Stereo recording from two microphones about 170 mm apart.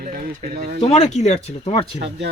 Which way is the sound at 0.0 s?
55° right (ahead or behind).